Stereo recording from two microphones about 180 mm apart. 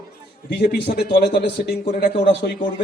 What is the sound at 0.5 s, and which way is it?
Speech, 65° left (ahead or behind).